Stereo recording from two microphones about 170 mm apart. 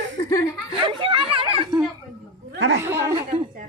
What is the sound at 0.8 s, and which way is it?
A child's voice, 30° right (ahead or behind).